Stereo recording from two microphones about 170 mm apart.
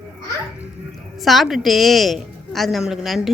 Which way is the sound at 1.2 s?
Centre (ahead or behind).